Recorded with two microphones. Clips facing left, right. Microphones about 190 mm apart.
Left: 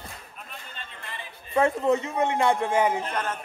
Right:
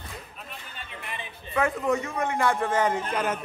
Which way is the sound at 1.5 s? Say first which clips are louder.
Left 3 dB; 30° left (ahead or behind).